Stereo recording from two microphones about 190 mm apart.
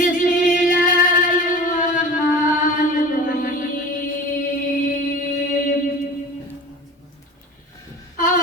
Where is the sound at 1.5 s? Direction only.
45° left (ahead or behind).